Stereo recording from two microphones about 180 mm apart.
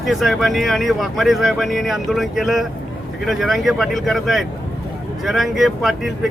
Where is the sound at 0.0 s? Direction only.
Centre (ahead or behind).